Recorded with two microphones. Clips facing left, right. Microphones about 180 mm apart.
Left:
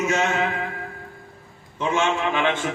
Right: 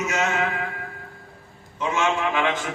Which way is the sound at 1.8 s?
30° left (ahead or behind).